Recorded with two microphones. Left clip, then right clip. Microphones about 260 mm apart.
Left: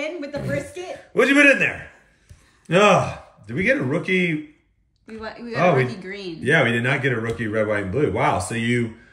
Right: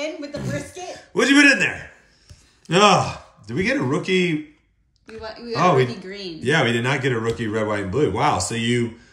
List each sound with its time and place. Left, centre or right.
0.0 s speech: left
1.1 s speech: centre
5.2 s speech: left
5.6 s speech: centre
5.9 s speech: left
6.4 s speech: centre